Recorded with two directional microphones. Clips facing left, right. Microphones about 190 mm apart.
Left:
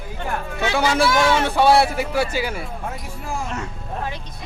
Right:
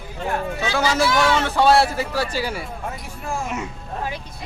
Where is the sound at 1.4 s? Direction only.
15° left (ahead or behind).